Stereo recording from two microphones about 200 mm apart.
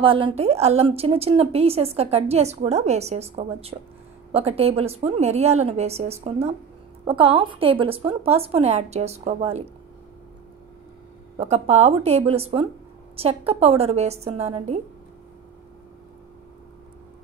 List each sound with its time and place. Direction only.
0.0 s a woman's voice: 25° right (ahead or behind)
11.3 s a woman's voice: 30° right (ahead or behind)